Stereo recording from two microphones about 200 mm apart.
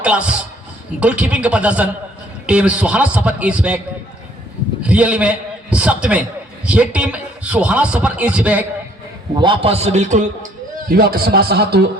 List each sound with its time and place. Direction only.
0.0 s a man's voice: 5° right (ahead or behind)
4.8 s a man's voice: 5° right (ahead or behind)
9.4 s a man's voice: 25° right (ahead or behind)
10.8 s a man's voice: 45° right (ahead or behind)